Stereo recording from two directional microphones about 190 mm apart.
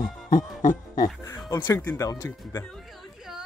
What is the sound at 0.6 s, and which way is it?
Music, 45° left (ahead or behind).